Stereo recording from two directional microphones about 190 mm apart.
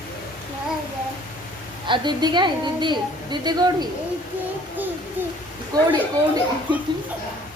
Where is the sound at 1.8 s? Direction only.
25° right (ahead or behind).